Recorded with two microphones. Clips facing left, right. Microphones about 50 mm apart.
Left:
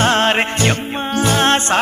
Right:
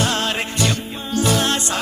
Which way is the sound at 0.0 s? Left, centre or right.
Left.